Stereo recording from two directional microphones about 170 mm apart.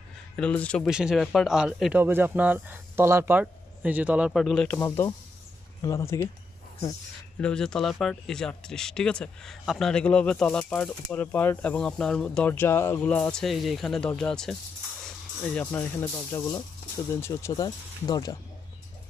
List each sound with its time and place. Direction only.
0.4 s speech: 5° left (ahead or behind)
0.8 s speech: 5° right (ahead or behind)
4.7 s speech: 15° left (ahead or behind)
7.3 s speech: 5° left (ahead or behind); by 18.4 s 25° left (ahead or behind)